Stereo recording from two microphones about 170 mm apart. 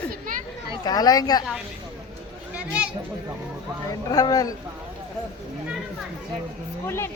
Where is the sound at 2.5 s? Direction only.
5° right (ahead or behind).